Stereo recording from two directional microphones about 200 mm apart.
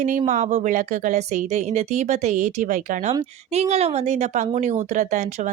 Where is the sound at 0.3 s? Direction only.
40° right (ahead or behind).